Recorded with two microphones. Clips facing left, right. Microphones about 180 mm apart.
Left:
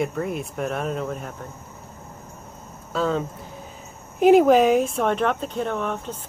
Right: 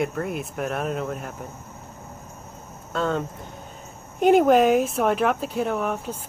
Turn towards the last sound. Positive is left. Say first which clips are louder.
# right 1 dB
turn(degrees=-10)  # may be behind; listen again after turning